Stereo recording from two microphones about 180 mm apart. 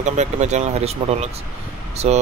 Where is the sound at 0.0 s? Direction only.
40° right (ahead or behind).